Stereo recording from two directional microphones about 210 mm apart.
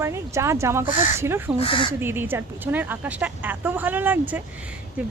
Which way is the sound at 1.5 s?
25° left (ahead or behind).